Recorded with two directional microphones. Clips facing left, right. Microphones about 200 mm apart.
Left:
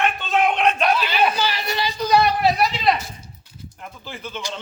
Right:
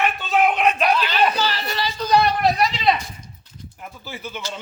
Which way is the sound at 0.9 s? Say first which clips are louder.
Even; 10° left (ahead or behind).